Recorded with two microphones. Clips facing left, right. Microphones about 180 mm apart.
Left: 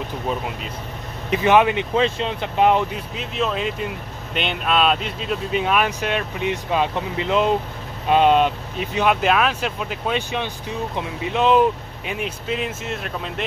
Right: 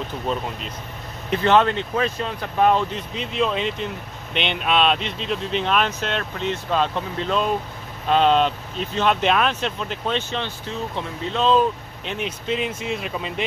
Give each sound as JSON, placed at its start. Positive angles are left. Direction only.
{"t": 1.3, "sound": "speech", "side_deg": 15}
{"t": 2.0, "sound": "speech", "side_deg": 25}
{"t": 3.2, "sound": "speech", "side_deg": 5}